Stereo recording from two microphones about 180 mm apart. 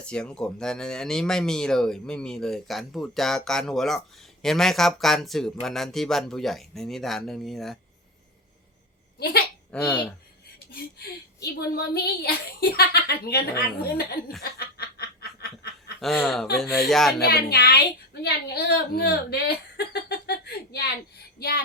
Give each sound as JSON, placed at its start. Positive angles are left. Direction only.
{"t": 0.0, "sound": "speech", "side_deg": 5}
{"t": 9.1, "sound": "speech", "side_deg": 60}
{"t": 9.7, "sound": "speech", "side_deg": 5}
{"t": 10.7, "sound": "a woman's voice", "side_deg": 60}
{"t": 14.8, "sound": "snicker", "side_deg": 60}
{"t": 16.0, "sound": "speech", "side_deg": 0}
{"t": 17.2, "sound": "a woman's voice", "side_deg": 60}